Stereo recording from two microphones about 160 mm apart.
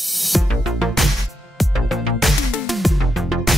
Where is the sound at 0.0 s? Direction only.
Centre (ahead or behind).